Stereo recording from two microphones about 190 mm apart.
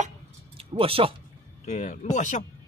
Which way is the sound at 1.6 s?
40° left (ahead or behind).